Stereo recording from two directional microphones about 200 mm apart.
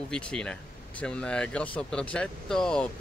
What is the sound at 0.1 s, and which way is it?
Speech, 5° left (ahead or behind).